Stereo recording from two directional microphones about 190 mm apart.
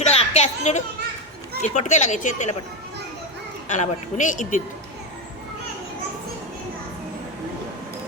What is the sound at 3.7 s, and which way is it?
Speech, 40° left (ahead or behind).